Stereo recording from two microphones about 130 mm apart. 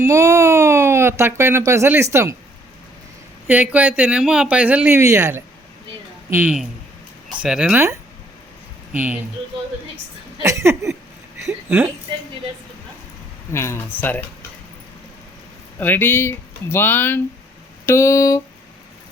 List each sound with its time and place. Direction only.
0.0 s speech: 20° right (ahead or behind)
3.4 s speech: 10° right (ahead or behind)
4.9 s a sound: 25° right (ahead or behind)
6.3 s speech: 10° right (ahead or behind)
8.9 s speech: 10° right (ahead or behind)
10.4 s a sound: 20° right (ahead or behind)
13.5 s speech: 20° left (ahead or behind)
15.8 s speech: 15° left (ahead or behind)